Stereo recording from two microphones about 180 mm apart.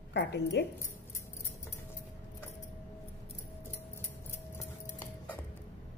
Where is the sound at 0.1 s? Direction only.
70° left (ahead or behind).